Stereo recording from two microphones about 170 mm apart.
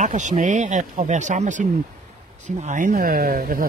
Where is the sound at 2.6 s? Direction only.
50° right (ahead or behind).